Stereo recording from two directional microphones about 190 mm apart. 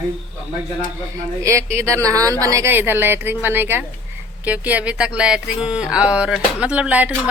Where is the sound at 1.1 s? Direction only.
15° right (ahead or behind).